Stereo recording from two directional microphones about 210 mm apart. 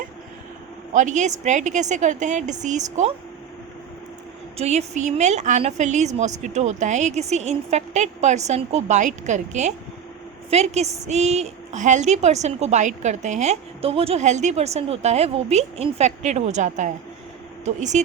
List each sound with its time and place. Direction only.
0.9 s a woman's voice: 35° right (ahead or behind)
4.5 s a woman's voice: 30° right (ahead or behind)